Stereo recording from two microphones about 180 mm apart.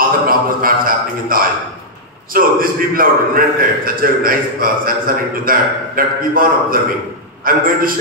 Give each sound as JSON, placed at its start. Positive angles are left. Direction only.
{"t": 0.3, "sound": "a man's voice", "side_deg": -50}